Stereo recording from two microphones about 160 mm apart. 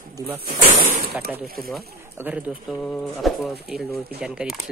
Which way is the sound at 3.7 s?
75° right (ahead or behind).